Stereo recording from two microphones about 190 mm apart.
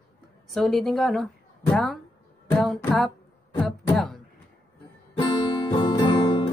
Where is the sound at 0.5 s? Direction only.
Centre (ahead or behind).